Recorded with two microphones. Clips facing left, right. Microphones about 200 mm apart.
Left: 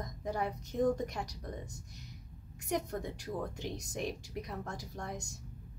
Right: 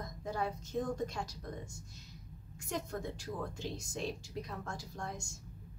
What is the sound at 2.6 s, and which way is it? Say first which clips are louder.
A woman's voice: left 3 dB; 15° left (ahead or behind).